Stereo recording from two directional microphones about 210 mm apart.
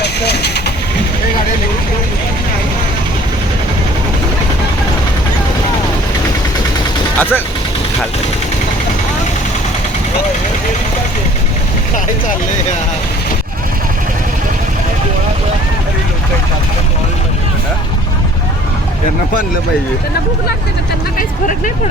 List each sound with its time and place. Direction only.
0.0 s vehicle: 50° left (ahead or behind)
7.2 s speech: 10° left (ahead or behind)
21.2 s speech: 40° left (ahead or behind)